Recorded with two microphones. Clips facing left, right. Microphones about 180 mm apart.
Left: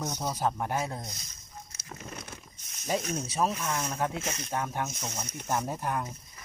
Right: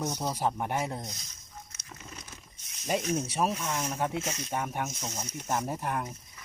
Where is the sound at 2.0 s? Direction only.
55° left (ahead or behind).